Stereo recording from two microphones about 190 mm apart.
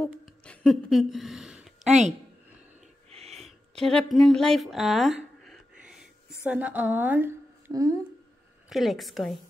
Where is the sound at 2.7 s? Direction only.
35° right (ahead or behind).